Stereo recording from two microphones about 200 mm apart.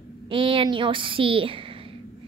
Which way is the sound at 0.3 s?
25° right (ahead or behind).